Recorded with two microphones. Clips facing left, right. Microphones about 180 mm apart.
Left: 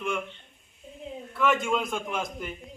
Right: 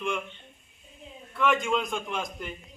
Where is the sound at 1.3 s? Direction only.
5° left (ahead or behind).